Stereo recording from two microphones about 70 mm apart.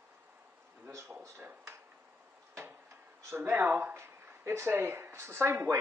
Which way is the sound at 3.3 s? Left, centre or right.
Right.